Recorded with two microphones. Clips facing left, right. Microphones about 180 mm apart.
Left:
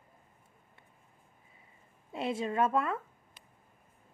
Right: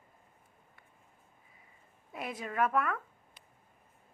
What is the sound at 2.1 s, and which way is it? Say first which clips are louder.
Speech: left 6 dB; 25° left (ahead or behind).